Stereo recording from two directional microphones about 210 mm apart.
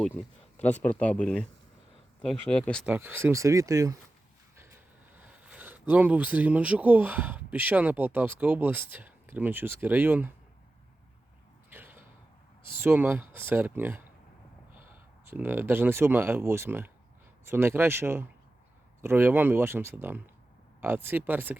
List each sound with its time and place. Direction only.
0.5 s speech: 5° left (ahead or behind)
2.9 s speech: 10° right (ahead or behind)
11.7 s a sound: 10° right (ahead or behind)
12.7 s speech: 10° right (ahead or behind)
15.3 s speech: 10° right (ahead or behind)